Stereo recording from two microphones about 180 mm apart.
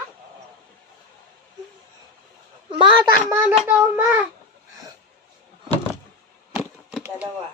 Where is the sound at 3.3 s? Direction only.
10° right (ahead or behind).